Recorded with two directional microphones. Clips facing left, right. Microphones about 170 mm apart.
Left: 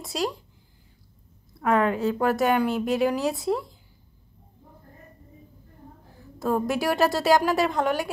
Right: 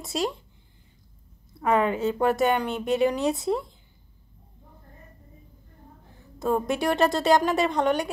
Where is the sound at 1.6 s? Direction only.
Centre (ahead or behind).